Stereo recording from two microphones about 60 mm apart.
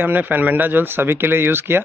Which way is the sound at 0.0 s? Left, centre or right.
Right.